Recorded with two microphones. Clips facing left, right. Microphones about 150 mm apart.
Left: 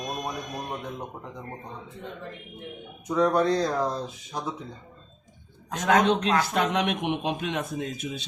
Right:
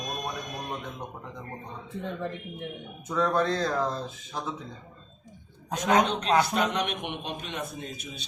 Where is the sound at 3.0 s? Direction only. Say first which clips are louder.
Left 3 dB; 15° left (ahead or behind).